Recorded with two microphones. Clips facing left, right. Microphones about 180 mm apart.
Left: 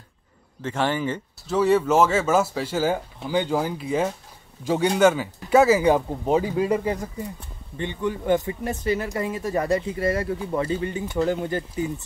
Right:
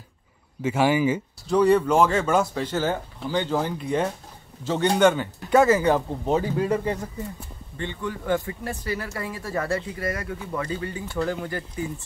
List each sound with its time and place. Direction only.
0.6 s speech: 10° right (ahead or behind)
1.5 s speech: 5° left (ahead or behind); by 11.9 s 20° left (ahead or behind)